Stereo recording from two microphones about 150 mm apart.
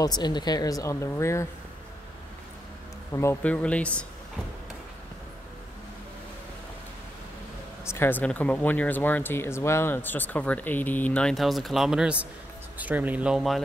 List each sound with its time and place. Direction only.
0.0 s speech: 30° left (ahead or behind)
3.1 s speech: 20° left (ahead or behind)
7.8 s speech: 15° left (ahead or behind); by 13.6 s 5° right (ahead or behind)